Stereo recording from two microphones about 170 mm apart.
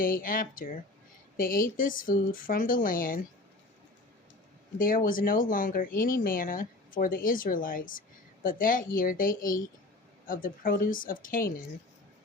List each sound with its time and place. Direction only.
0.0 s speech: 55° left (ahead or behind)
4.8 s speech: 55° left (ahead or behind)